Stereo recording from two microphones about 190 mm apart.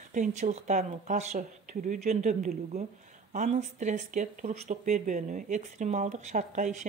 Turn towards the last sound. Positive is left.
turn(degrees=-40)  # may be behind; listen again after turning